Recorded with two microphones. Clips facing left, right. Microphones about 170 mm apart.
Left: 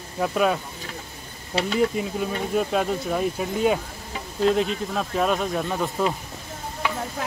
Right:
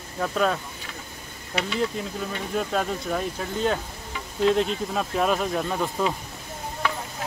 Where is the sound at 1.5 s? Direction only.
30° left (ahead or behind).